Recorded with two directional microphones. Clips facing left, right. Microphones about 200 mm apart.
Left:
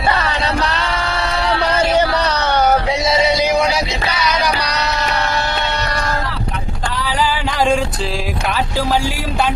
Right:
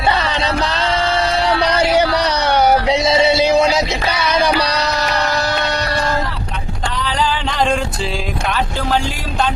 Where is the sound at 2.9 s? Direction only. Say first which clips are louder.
Right 2 dB; 25° right (ahead or behind).